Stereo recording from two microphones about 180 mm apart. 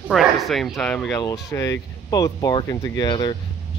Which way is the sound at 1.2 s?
20° left (ahead or behind).